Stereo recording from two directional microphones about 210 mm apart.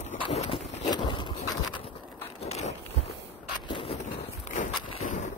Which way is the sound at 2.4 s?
30° left (ahead or behind).